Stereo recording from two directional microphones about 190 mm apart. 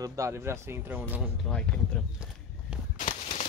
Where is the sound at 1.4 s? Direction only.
5° left (ahead or behind).